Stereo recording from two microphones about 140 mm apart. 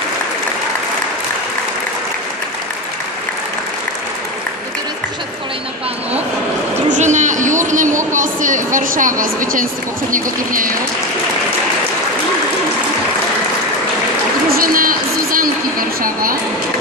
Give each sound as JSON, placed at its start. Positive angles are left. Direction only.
{"t": 6.9, "sound": "a woman's voice", "side_deg": -60}
{"t": 14.6, "sound": "a sound", "side_deg": -85}
{"t": 16.0, "sound": "a woman's voice", "side_deg": -90}